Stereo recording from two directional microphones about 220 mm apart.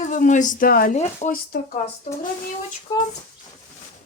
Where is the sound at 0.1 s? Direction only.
35° left (ahead or behind).